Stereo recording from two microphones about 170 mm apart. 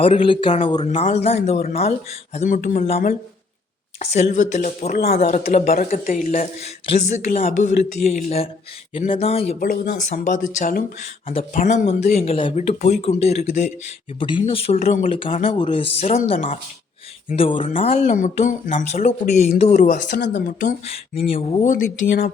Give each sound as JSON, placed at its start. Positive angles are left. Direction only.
{"t": 0.0, "sound": "speech", "side_deg": 30}
{"t": 0.8, "sound": "speech", "side_deg": 45}
{"t": 4.0, "sound": "speech", "side_deg": 40}
{"t": 5.7, "sound": "speech", "side_deg": 55}
{"t": 9.6, "sound": "speech", "side_deg": 50}
{"t": 11.5, "sound": "speech", "side_deg": 45}
{"t": 14.2, "sound": "speech", "side_deg": 30}
{"t": 14.8, "sound": "speech", "side_deg": 50}
{"t": 15.1, "sound": "speech", "side_deg": 30}
{"t": 17.9, "sound": "speech", "side_deg": 45}
{"t": 20.8, "sound": "speech", "side_deg": 35}